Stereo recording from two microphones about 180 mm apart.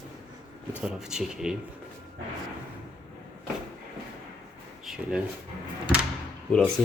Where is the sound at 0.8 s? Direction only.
5° right (ahead or behind).